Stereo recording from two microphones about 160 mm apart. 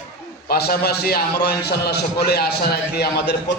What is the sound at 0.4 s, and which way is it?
A man's voice, 70° left (ahead or behind).